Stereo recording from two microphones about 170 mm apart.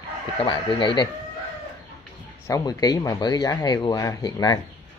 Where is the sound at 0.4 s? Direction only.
25° left (ahead or behind).